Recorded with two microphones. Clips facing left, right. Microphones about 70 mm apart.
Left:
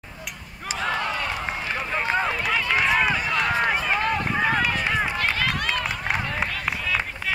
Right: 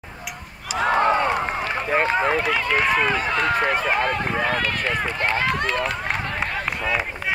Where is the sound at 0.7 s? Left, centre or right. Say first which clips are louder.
Right 8 dB; right.